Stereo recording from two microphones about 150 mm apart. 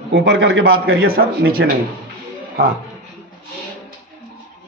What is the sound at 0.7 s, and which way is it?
A man's voice, 90° right.